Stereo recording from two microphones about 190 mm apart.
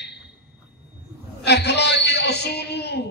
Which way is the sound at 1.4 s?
60° left (ahead or behind).